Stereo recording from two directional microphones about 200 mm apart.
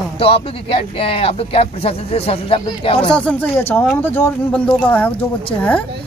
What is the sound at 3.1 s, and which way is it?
Speech, 5° left (ahead or behind).